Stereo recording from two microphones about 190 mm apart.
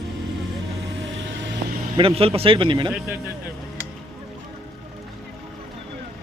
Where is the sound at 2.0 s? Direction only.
30° right (ahead or behind).